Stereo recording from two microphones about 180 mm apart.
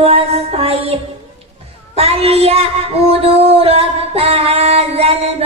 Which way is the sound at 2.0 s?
35° right (ahead or behind).